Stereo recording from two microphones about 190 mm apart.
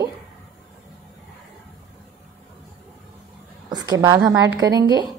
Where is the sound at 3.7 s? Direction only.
20° right (ahead or behind).